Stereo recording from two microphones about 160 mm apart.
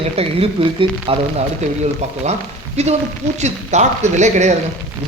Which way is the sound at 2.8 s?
45° right (ahead or behind).